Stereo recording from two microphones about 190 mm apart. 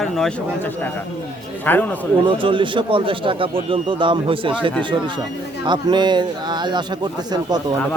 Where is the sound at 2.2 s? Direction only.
25° right (ahead or behind).